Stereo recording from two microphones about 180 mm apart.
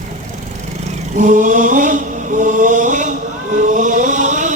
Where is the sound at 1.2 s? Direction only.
45° right (ahead or behind).